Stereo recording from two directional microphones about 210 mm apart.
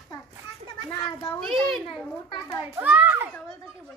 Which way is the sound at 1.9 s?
20° left (ahead or behind).